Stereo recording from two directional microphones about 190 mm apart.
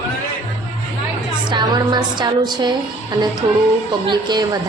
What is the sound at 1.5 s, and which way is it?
A woman's voice, 25° right (ahead or behind).